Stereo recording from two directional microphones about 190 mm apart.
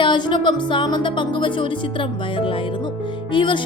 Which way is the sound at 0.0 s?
25° left (ahead or behind).